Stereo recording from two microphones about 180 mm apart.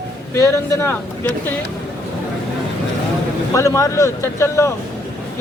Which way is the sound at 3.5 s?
15° left (ahead or behind).